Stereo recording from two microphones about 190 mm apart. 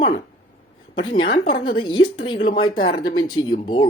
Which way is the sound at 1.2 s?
50° left (ahead or behind).